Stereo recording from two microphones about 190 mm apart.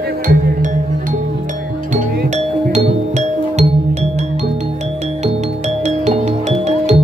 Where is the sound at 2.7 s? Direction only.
35° right (ahead or behind).